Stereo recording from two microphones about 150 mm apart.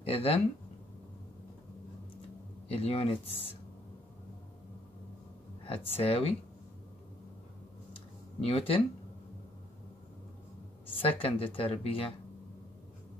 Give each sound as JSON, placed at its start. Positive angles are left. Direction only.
{"t": 0.0, "sound": "speech", "side_deg": 40}
{"t": 2.7, "sound": "speech", "side_deg": 40}
{"t": 5.9, "sound": "speech", "side_deg": 40}
{"t": 8.4, "sound": "speech", "side_deg": 40}
{"t": 11.0, "sound": "speech", "side_deg": 40}